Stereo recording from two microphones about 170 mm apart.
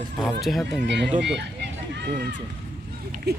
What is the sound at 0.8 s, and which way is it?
Speech, 90° right.